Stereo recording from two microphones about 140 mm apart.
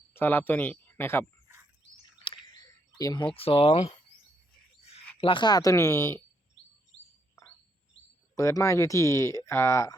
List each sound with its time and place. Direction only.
0.1 s speech: 15° left (ahead or behind)
2.2 s a sound: 35° left (ahead or behind)
3.3 s speech: 40° left (ahead or behind)
5.2 s speech: 35° left (ahead or behind); by 6.2 s 20° left (ahead or behind)
8.4 s speech: 20° left (ahead or behind)